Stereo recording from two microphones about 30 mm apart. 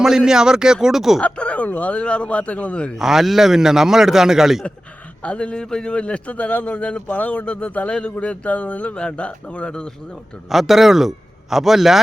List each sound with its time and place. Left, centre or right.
0.0 s a man's voice: centre
1.2 s speech: left
1.9 s a man's voice: left
2.4 s speech: left
3.0 s a man's voice: centre
5.2 s a man's voice: left
5.6 s a man's voice: left
5.9 s a man's voice: left
7.6 s a man's voice: left
8.1 s speech: left
9.1 s a man's voice: left
10.5 s a man's voice: centre